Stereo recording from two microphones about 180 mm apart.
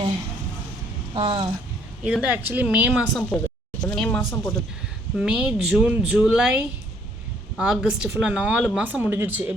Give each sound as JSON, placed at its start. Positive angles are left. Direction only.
{"t": 1.1, "sound": "speech", "side_deg": -30}
{"t": 2.0, "sound": "speech", "side_deg": -5}
{"t": 3.2, "sound": "speech", "side_deg": 10}